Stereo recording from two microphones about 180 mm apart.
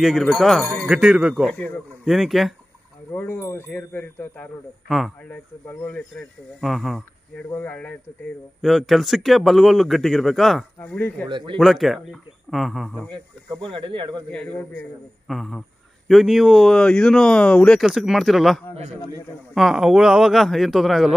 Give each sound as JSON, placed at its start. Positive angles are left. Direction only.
{"t": 0.0, "sound": "a man's voice", "side_deg": 0}
{"t": 3.1, "sound": "a man's voice", "side_deg": 10}
{"t": 11.2, "sound": "speech", "side_deg": -25}
{"t": 11.5, "sound": "a man's voice", "side_deg": 0}
{"t": 13.1, "sound": "speech", "side_deg": -25}
{"t": 14.3, "sound": "a man's voice", "side_deg": 10}